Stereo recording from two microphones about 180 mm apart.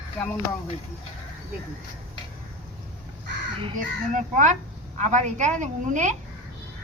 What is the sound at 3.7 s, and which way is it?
A woman's voice, 45° right (ahead or behind).